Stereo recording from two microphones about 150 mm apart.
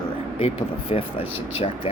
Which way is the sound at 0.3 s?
40° left (ahead or behind).